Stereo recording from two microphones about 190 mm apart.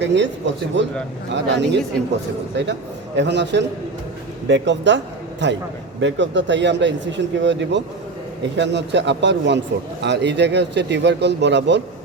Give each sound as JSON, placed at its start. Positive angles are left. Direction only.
{"t": 0.0, "sound": "speech", "side_deg": -70}
{"t": 3.2, "sound": "a man's voice", "side_deg": -65}